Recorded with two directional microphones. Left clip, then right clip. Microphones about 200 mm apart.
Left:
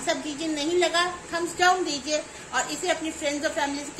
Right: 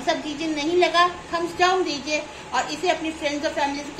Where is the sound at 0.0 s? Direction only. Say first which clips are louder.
Right 3 dB; 60° left (ahead or behind).